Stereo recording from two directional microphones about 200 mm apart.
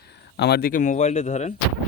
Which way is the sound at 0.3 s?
55° left (ahead or behind).